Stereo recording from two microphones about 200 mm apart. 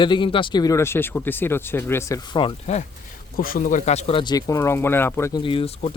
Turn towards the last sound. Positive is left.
turn(degrees=25)  # may be behind; listen again after turning